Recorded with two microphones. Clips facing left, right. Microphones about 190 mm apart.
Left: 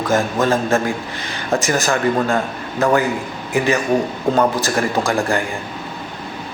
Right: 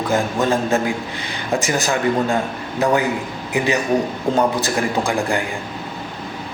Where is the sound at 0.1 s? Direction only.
15° right (ahead or behind).